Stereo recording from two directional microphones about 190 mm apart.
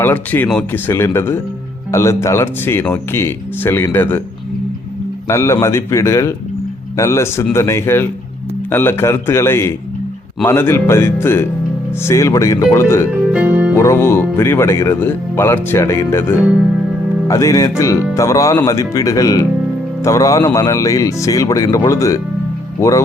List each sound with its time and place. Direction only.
0.0 s speech: 10° left (ahead or behind)
5.3 s speech: 15° left (ahead or behind)
13.3 s music: 10° right (ahead or behind)
13.7 s speech: 15° left (ahead or behind)